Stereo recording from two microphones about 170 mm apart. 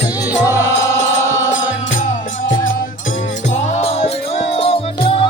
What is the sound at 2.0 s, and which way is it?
Music, 50° left (ahead or behind).